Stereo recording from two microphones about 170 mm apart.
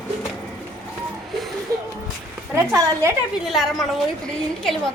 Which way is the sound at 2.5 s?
15° right (ahead or behind).